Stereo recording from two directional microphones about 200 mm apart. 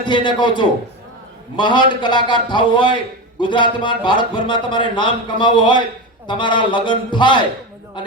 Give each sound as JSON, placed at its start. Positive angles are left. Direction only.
{"t": 0.0, "sound": "a man's voice", "side_deg": 25}